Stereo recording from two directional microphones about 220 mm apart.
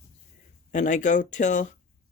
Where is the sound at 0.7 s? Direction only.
35° left (ahead or behind).